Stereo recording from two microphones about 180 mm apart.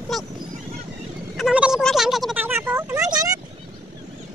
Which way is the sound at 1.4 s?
5° right (ahead or behind).